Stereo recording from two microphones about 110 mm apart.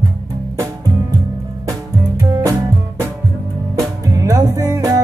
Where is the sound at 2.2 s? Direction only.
30° right (ahead or behind).